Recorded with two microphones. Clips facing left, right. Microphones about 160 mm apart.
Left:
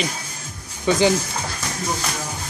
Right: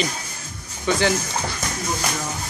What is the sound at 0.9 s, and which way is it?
Speech, 15° left (ahead or behind).